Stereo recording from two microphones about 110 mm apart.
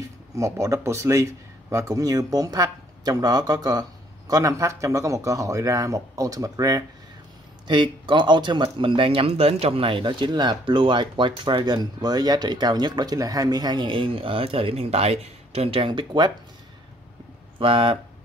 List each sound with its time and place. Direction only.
0.4 s a man's voice: 30° right (ahead or behind)
7.6 s speech: 45° right (ahead or behind)
17.6 s speech: 55° right (ahead or behind)